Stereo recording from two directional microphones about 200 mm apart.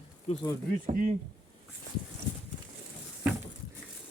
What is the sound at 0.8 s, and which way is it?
Speech, 40° right (ahead or behind).